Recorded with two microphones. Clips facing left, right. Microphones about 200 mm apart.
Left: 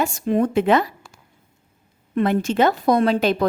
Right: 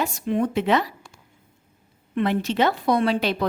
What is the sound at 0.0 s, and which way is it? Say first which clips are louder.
Speech: left 4 dB; 45° left (ahead or behind).